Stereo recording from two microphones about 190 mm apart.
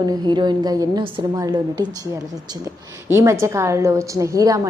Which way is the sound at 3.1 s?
15° right (ahead or behind).